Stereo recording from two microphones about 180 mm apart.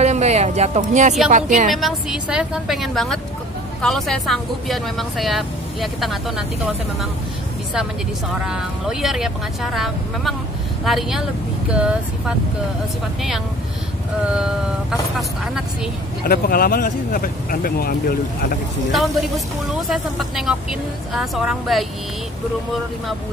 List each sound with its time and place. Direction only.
0.0 s a sound: 35° right (ahead or behind)
1.3 s a woman's voice: 45° right (ahead or behind)
1.7 s speech: centre (ahead or behind)
8.5 s speech: 5° right (ahead or behind)
14.2 s speech: 5° right (ahead or behind)
16.3 s speech: 55° left (ahead or behind)
18.9 s speech: centre (ahead or behind)